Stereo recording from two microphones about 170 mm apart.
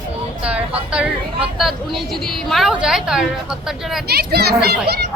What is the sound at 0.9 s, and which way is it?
Speech, 5° right (ahead or behind).